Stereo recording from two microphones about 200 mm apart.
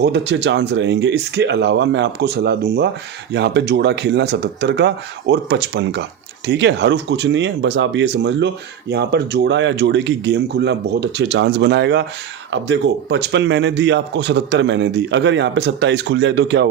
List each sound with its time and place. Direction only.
0.0 s speech: 60° right (ahead or behind)